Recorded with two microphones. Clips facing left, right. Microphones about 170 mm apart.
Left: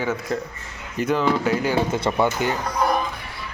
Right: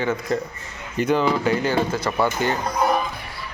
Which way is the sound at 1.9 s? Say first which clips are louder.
Left 1 dB; 25° left (ahead or behind).